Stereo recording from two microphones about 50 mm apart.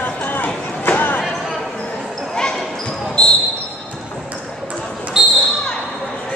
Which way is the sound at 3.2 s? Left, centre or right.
Centre.